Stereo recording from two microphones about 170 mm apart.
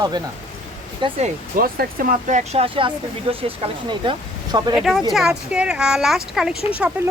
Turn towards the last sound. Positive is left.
turn(degrees=-5)  # may be behind; listen again after turning